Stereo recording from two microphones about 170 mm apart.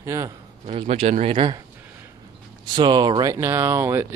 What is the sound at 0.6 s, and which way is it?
Speech, 35° right (ahead or behind).